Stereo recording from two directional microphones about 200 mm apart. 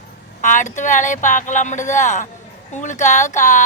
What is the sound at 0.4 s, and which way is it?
Speech, 40° left (ahead or behind).